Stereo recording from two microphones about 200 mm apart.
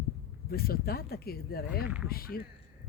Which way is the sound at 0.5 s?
50° left (ahead or behind).